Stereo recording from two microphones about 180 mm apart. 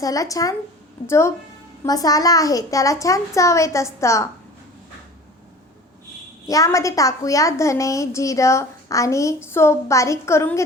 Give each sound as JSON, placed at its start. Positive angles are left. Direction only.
{"t": 0.0, "sound": "a woman's voice", "side_deg": 20}
{"t": 6.5, "sound": "a woman's voice", "side_deg": 20}